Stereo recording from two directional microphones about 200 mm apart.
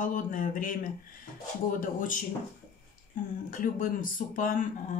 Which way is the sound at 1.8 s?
40° left (ahead or behind).